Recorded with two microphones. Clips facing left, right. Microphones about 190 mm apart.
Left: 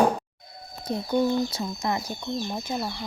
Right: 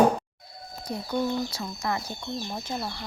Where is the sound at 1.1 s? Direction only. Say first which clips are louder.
Left 4 dB; 20° left (ahead or behind).